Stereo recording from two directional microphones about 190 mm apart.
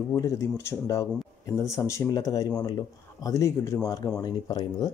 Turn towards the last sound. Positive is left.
turn(degrees=20)  # may be behind; listen again after turning